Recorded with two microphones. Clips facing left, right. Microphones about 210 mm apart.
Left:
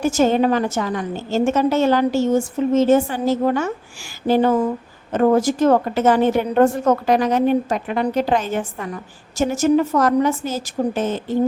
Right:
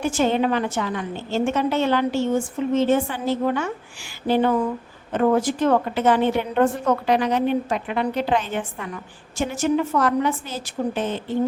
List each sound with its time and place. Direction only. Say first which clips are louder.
0.0 s a woman's voice: left 4 dB; 40° left (ahead or behind)